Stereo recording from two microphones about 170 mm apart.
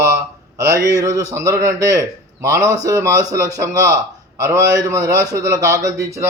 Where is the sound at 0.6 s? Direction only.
20° right (ahead or behind).